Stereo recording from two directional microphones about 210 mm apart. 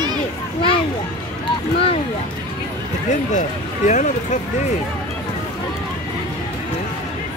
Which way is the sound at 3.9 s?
35° left (ahead or behind).